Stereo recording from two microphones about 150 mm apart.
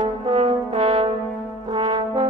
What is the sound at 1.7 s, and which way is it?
Brass instrument, 30° right (ahead or behind).